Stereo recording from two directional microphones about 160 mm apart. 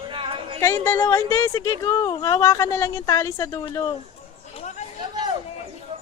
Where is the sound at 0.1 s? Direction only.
30° right (ahead or behind).